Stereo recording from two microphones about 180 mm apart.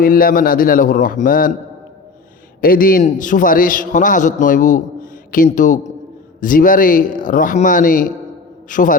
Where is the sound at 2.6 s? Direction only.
55° left (ahead or behind).